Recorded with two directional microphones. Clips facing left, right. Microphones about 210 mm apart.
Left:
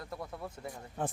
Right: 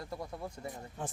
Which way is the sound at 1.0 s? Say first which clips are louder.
Left 5 dB; 60° left (ahead or behind).